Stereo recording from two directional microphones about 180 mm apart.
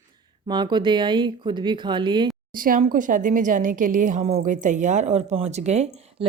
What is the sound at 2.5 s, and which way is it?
A woman's voice, 50° right (ahead or behind).